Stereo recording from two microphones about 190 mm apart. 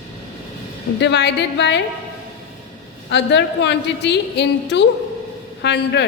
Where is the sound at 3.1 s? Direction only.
65° left (ahead or behind).